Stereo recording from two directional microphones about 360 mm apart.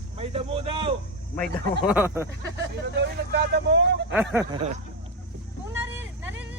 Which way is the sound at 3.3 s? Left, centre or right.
Right.